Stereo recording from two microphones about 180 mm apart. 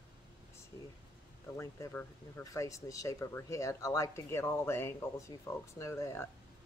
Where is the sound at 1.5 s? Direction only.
15° left (ahead or behind).